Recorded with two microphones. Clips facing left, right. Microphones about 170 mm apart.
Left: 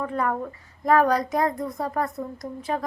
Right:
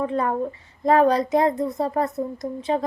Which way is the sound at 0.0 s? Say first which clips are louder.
Right 3 dB; 25° right (ahead or behind).